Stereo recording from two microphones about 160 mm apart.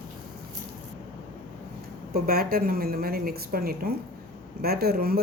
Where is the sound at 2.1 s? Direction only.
70° right (ahead or behind).